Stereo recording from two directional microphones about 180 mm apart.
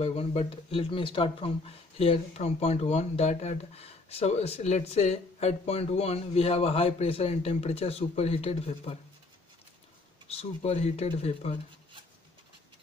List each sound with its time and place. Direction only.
0.0 s speech: 35° left (ahead or behind)
10.2 s speech: 35° left (ahead or behind)